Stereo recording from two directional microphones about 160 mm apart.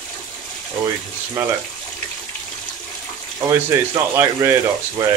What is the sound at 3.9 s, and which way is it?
Speech, 20° right (ahead or behind).